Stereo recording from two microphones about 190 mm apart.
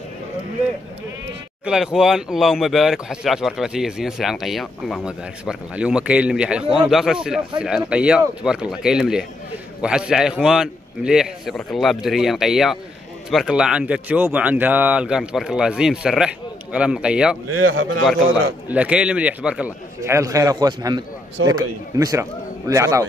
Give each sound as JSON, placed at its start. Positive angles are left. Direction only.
{"t": 1.6, "sound": "speech", "side_deg": -5}
{"t": 17.6, "sound": "a man's voice", "side_deg": -90}
{"t": 18.7, "sound": "a man's voice", "side_deg": -5}